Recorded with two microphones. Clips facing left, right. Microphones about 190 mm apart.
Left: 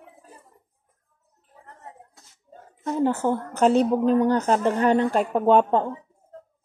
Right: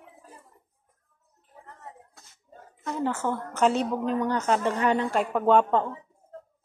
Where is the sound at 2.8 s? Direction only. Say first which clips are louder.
Left 6 dB; 30° left (ahead or behind).